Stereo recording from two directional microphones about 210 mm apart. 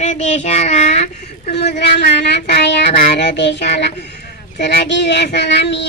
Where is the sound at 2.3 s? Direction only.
50° left (ahead or behind).